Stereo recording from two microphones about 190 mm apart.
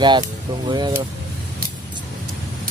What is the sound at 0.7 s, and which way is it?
Speech, 20° right (ahead or behind).